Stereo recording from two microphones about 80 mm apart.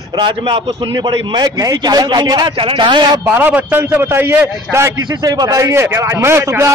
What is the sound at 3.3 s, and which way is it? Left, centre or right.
A man's voice, right.